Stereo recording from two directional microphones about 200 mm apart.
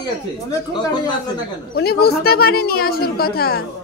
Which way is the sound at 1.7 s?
50° left (ahead or behind).